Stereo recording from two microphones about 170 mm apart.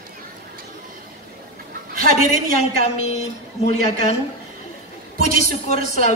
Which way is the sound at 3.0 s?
40° left (ahead or behind).